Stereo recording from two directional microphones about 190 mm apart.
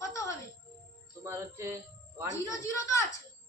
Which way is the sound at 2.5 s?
15° left (ahead or behind).